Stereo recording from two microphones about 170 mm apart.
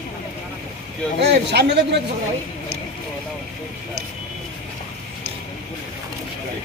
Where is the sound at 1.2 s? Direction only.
80° right.